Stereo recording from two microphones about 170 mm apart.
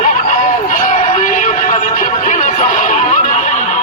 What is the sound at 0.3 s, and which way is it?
Music, 45° left (ahead or behind).